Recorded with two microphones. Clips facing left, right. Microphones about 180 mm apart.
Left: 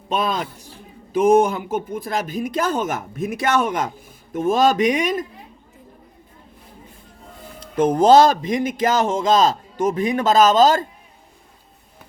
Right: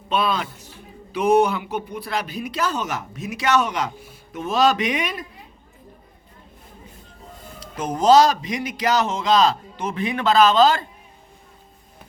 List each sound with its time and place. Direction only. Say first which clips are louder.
0.1 s speech: even; 45° left (ahead or behind)
7.6 s speech: left 6 dB; 55° left (ahead or behind)